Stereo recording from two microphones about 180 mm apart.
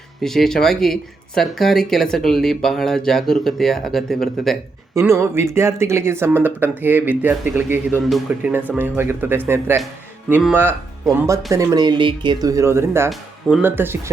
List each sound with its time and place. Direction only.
0.2 s speech: centre (ahead or behind)
4.9 s speech: 15° right (ahead or behind)